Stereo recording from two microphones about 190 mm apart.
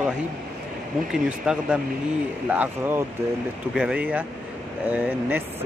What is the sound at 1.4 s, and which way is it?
Speech, 5° right (ahead or behind).